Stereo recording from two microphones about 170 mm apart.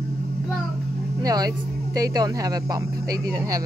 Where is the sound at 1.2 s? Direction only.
20° right (ahead or behind).